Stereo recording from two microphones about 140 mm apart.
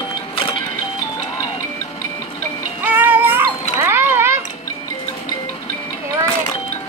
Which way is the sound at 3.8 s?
15° right (ahead or behind).